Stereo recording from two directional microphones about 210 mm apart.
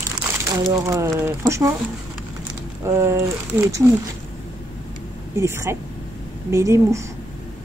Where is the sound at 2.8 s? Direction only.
15° right (ahead or behind).